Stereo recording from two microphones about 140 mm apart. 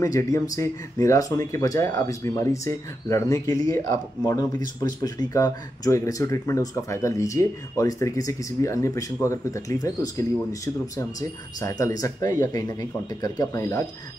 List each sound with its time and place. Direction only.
0.0 s speech: 25° left (ahead or behind)